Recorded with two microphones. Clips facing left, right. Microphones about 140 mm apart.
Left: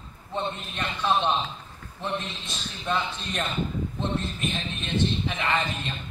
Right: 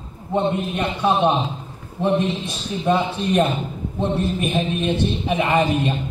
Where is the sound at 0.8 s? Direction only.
15° right (ahead or behind).